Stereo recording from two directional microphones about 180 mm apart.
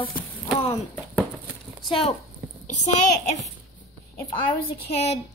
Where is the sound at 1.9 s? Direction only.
30° left (ahead or behind).